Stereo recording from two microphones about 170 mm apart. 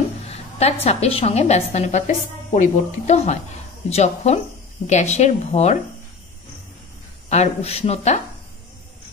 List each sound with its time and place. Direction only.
0.3 s a sound: 40° left (ahead or behind)
0.8 s a woman's voice: 35° left (ahead or behind)
7.2 s a woman's voice: 40° left (ahead or behind)